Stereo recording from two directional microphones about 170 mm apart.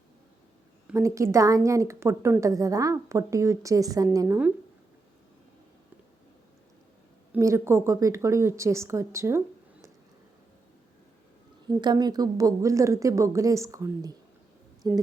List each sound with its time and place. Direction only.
0.9 s a woman's voice: 15° right (ahead or behind)
7.3 s a woman's voice: 15° right (ahead or behind)
11.8 s a woman's voice: 25° right (ahead or behind)